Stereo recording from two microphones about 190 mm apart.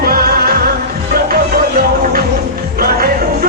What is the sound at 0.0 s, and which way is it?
Music, 50° right (ahead or behind).